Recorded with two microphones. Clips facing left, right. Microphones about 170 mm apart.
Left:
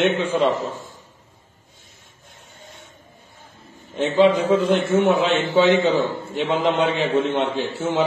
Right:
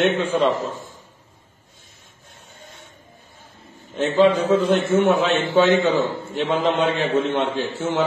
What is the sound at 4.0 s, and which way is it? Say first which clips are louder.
A man's voice: even; 10° left (ahead or behind).